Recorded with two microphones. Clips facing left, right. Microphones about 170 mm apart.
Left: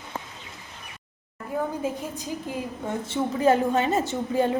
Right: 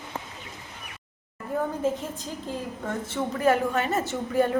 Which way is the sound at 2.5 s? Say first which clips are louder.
Even; 15° left (ahead or behind).